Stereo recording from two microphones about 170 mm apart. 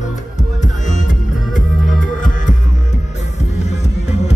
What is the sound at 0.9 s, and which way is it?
Music, 45° left (ahead or behind).